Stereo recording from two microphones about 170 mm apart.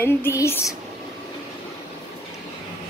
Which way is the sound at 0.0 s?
15° left (ahead or behind).